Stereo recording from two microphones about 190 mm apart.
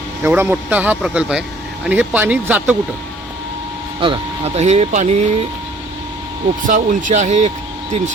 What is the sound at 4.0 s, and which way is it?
Speech, 30° right (ahead or behind).